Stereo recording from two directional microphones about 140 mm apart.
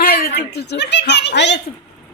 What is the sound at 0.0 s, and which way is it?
Chuckle, 90° left.